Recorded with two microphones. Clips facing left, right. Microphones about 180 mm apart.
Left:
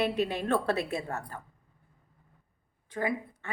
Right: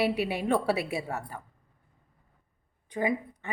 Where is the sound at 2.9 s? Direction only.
15° right (ahead or behind).